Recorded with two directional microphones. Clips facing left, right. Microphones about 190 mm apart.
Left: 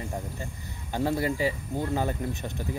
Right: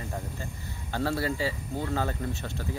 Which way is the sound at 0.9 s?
15° left (ahead or behind).